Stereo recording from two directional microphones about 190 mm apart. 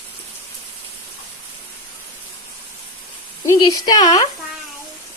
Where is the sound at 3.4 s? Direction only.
20° left (ahead or behind).